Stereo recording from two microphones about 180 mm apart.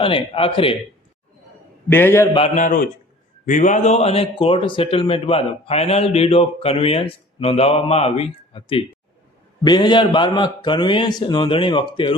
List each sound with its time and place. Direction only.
0.0 s a man's voice: 30° left (ahead or behind)
1.9 s a man's voice: 10° left (ahead or behind)
2.6 s a man's voice: 50° left (ahead or behind); by 12.1 s 25° left (ahead or behind)